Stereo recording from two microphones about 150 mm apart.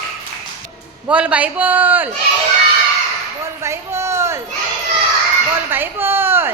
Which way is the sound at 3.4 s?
20° right (ahead or behind).